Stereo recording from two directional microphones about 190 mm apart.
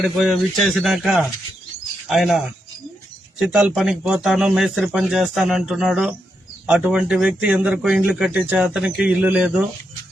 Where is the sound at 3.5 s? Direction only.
Centre (ahead or behind).